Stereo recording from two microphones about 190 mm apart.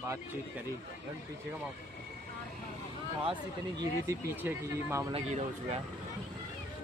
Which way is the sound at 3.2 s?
25° right (ahead or behind).